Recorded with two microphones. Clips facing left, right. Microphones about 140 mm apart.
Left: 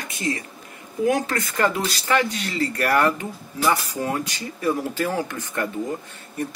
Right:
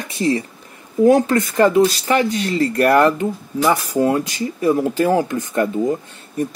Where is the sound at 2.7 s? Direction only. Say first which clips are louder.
Right 7 dB; 25° right (ahead or behind).